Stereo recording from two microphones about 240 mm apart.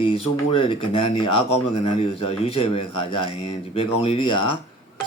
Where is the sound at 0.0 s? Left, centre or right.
Left.